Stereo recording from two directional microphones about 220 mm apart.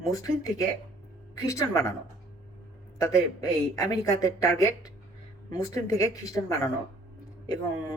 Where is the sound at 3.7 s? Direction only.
15° left (ahead or behind).